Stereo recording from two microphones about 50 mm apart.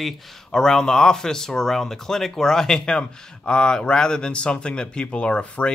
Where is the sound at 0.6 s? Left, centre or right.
Centre.